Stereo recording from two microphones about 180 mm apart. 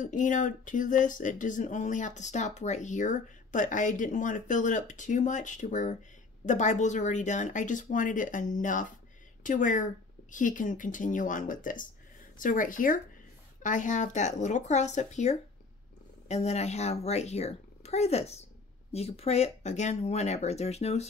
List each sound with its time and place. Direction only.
0.0 s a woman's voice: 45° left (ahead or behind)